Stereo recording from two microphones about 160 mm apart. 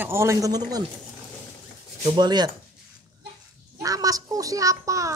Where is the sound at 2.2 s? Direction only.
25° right (ahead or behind).